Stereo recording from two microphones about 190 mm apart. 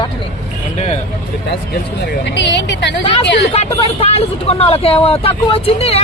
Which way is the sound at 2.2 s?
70° left (ahead or behind).